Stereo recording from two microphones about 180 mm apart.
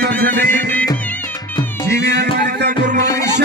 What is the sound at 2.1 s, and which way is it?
Music, 65° right (ahead or behind).